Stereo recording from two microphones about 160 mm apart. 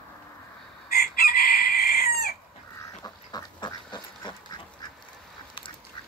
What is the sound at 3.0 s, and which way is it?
Duck, 25° left (ahead or behind).